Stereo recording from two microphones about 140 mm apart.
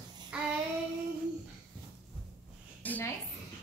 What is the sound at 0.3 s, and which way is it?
Child singing, 10° right (ahead or behind).